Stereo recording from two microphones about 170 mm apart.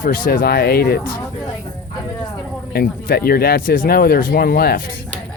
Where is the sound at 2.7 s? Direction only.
65° left (ahead or behind).